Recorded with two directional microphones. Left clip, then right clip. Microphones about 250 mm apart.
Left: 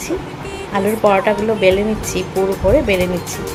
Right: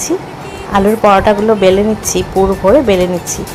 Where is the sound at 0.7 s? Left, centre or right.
Centre.